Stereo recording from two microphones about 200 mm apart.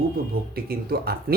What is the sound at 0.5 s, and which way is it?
Speech, 50° right (ahead or behind).